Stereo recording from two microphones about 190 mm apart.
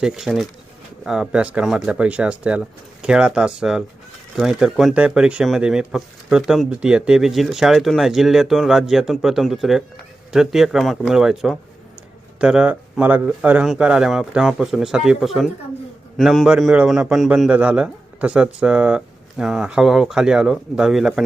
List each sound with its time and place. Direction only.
0.0 s speech: centre (ahead or behind)